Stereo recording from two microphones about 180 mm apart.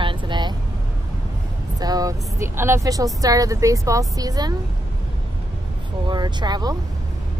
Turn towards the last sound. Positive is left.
turn(degrees=-20)  # may be behind; listen again after turning